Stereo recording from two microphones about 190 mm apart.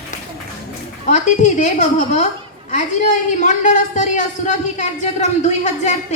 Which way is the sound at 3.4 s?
40° left (ahead or behind).